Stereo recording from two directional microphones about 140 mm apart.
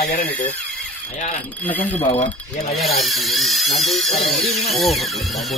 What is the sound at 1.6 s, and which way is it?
Speech, 10° left (ahead or behind).